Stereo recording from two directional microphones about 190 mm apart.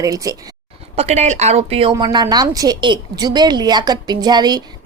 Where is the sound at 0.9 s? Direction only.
35° right (ahead or behind).